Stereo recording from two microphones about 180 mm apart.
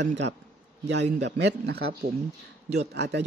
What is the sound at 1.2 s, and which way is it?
Speech, 75° right (ahead or behind).